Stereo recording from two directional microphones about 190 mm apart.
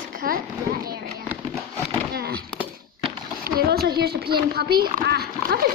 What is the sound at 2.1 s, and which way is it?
Speech, 55° right (ahead or behind).